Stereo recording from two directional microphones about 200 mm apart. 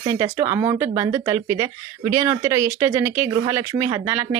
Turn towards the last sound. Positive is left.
turn(degrees=-10)  # may be behind; listen again after turning